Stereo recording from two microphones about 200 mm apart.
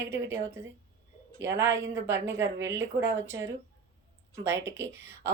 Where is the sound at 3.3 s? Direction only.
15° right (ahead or behind).